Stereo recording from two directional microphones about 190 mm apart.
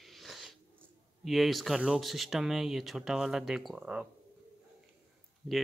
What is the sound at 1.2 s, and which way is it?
A man's voice, centre (ahead or behind).